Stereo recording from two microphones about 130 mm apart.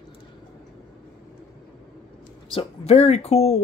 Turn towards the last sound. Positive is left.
turn(degrees=55)  # may be behind; listen again after turning